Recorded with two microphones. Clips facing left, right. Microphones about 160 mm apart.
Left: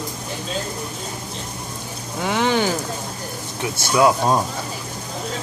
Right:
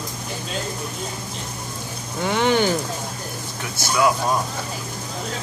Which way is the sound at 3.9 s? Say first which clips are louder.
Left 3 dB; 25° left (ahead or behind).